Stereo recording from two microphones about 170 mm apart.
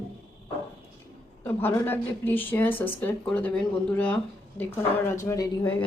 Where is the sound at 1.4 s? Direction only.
15° left (ahead or behind).